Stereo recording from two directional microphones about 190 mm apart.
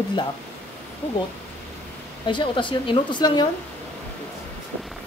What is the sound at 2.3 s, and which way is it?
Speech, 25° left (ahead or behind).